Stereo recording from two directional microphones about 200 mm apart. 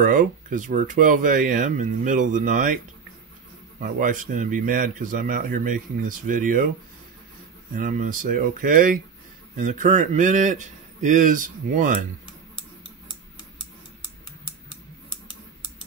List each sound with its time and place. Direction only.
0.0 s speech: 40° right (ahead or behind)
3.8 s speech: 40° right (ahead or behind)
7.7 s speech: 45° right (ahead or behind)